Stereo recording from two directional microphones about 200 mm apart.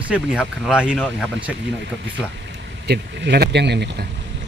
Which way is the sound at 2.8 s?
55° right (ahead or behind).